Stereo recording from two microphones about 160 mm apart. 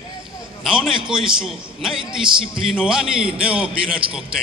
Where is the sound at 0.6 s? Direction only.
5° right (ahead or behind).